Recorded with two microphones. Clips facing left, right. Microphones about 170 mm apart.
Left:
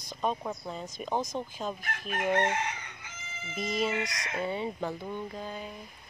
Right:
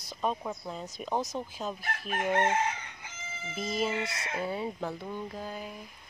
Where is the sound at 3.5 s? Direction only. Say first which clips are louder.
Left 1 dB; centre (ahead or behind).